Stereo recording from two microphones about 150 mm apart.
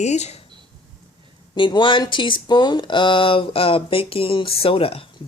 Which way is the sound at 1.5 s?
35° left (ahead or behind).